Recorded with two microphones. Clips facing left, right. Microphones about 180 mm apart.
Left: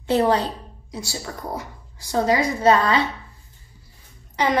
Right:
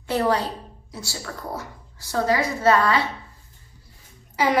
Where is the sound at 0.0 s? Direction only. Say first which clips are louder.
Left 3 dB; 20° left (ahead or behind).